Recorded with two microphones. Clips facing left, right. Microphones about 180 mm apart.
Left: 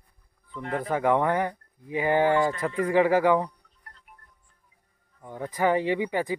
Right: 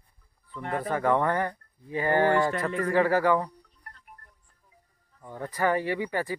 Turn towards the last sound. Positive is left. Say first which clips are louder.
# left 3 dB
turn(degrees=15)  # may be behind; listen again after turning